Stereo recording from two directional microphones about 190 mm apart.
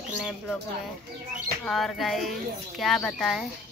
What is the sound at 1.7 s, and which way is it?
A woman's voice, centre (ahead or behind).